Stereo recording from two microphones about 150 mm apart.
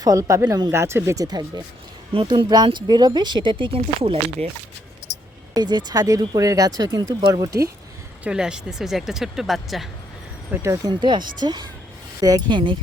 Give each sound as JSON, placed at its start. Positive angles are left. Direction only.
{"t": 0.0, "sound": "speech", "side_deg": -20}
{"t": 3.8, "sound": "speech", "side_deg": -45}
{"t": 5.5, "sound": "speech", "side_deg": -25}
{"t": 8.2, "sound": "speech", "side_deg": -5}
{"t": 10.5, "sound": "speech", "side_deg": -20}
{"t": 11.0, "sound": "speech", "side_deg": -30}